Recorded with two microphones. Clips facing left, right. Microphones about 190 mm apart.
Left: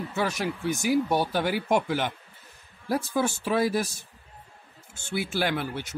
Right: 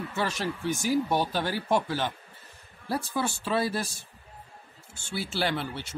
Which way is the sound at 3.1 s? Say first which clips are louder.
Left 3 dB; 15° left (ahead or behind).